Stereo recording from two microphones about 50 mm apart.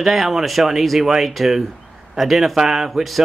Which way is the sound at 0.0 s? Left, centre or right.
Centre.